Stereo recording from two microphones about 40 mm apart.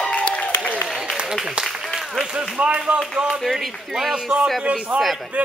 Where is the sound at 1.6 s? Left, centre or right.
Centre.